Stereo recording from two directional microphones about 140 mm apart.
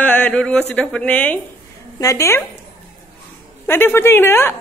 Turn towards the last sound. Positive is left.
turn(degrees=15)  # may be behind; listen again after turning